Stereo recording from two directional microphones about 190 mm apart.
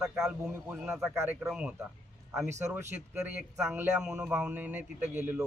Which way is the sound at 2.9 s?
10° right (ahead or behind).